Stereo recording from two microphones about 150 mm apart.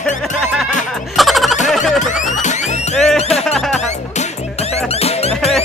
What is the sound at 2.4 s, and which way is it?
Music, 50° left (ahead or behind).